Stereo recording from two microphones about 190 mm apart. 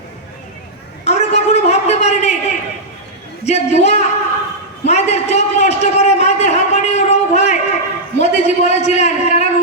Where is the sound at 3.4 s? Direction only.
35° left (ahead or behind).